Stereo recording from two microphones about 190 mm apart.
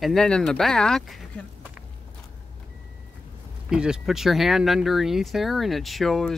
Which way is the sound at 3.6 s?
5° right (ahead or behind).